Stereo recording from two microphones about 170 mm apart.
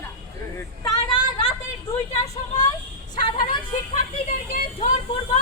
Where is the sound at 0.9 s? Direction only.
30° left (ahead or behind).